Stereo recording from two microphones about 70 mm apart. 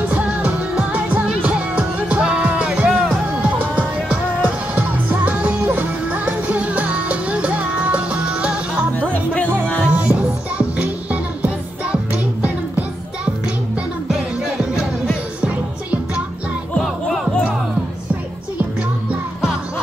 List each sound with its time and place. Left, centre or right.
0.1 s music: centre
9.0 s music: centre
9.8 s music: centre
14.0 s music: centre
16.8 s music: centre